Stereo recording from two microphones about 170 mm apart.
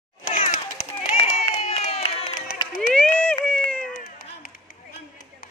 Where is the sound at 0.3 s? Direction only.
50° left (ahead or behind).